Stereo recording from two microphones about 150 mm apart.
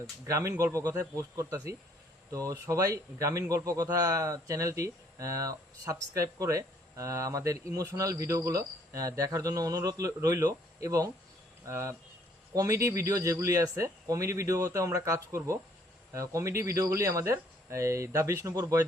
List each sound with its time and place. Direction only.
0.3 s speech: 20° right (ahead or behind)